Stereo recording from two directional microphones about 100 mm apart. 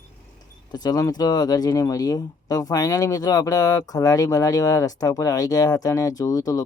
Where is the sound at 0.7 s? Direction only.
40° left (ahead or behind).